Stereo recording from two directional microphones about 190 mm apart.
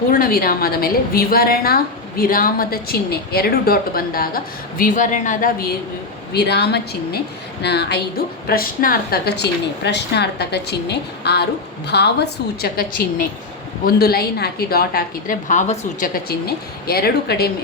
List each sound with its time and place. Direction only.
0.1 s a woman's voice: 50° left (ahead or behind)
6.3 s a woman's voice: 60° left (ahead or behind)
8.4 s a woman's voice: 50° left (ahead or behind)